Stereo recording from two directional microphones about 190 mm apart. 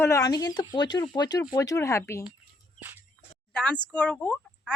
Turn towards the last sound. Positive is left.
turn(degrees=5)  # may be behind; listen again after turning